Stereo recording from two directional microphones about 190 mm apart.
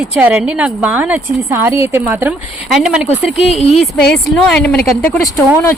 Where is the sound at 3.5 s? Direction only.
35° left (ahead or behind).